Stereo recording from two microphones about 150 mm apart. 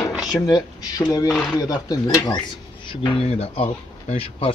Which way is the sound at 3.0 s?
40° left (ahead or behind).